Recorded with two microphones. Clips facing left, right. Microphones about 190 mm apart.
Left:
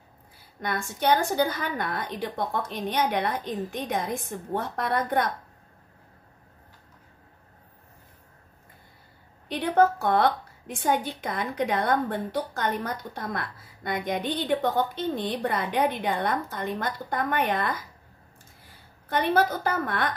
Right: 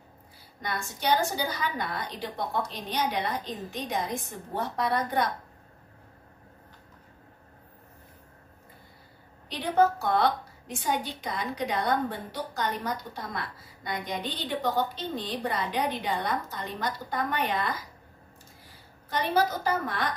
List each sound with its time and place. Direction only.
0.6 s a woman's voice: 55° left (ahead or behind)
9.5 s a woman's voice: 55° left (ahead or behind)
19.0 s a woman's voice: 55° left (ahead or behind)